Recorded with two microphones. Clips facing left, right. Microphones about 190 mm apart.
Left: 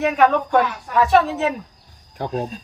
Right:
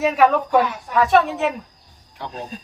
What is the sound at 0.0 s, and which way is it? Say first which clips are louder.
Speech: even; 5° right (ahead or behind).